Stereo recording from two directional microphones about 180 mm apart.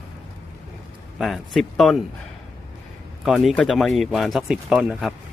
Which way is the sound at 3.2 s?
Centre (ahead or behind).